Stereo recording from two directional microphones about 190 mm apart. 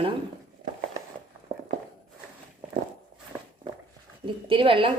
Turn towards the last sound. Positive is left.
turn(degrees=-30)  # may be behind; listen again after turning